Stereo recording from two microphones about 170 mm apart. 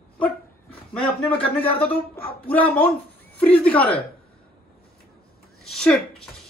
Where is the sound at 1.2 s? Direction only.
35° left (ahead or behind).